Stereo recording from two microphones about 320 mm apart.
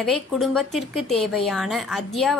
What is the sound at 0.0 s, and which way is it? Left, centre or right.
A woman's voice, centre.